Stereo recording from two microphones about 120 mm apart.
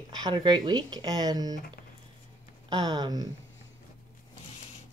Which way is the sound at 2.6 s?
35° right (ahead or behind).